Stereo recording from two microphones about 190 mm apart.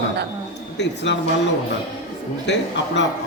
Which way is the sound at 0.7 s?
65° left (ahead or behind).